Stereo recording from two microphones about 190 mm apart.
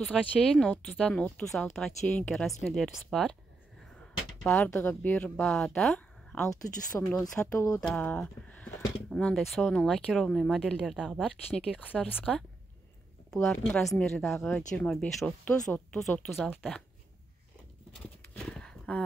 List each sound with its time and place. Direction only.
0.0 s speech: centre (ahead or behind)
4.4 s speech: 5° left (ahead or behind)
6.5 s speech: 15° left (ahead or behind)
7.2 s speech: 5° left (ahead or behind)
13.3 s speech: 5° left (ahead or behind)
17.9 s horse: 5° left (ahead or behind)